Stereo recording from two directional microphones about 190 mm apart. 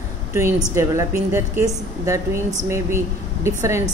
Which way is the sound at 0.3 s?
15° right (ahead or behind).